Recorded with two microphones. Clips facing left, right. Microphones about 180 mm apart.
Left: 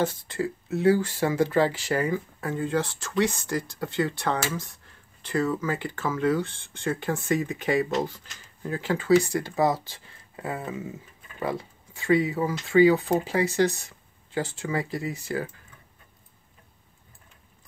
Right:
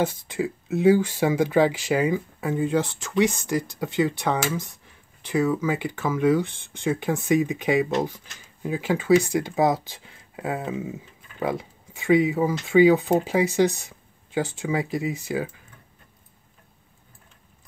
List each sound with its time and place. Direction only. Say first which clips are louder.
0.0 s speech: right 2 dB; 15° right (ahead or behind)